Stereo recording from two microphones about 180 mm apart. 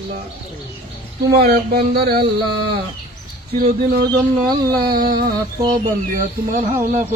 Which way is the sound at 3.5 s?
55° right (ahead or behind).